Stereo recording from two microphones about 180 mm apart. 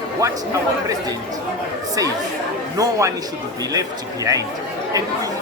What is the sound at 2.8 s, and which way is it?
Speech, 15° right (ahead or behind).